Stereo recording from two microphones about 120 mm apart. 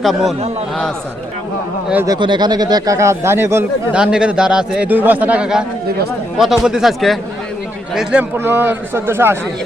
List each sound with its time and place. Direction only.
0.0 s speech: centre (ahead or behind)
2.0 s speech: 40° right (ahead or behind); by 3.7 s 20° right (ahead or behind)
3.9 s speech: 5° right (ahead or behind)
8.2 s a man's voice: 20° right (ahead or behind)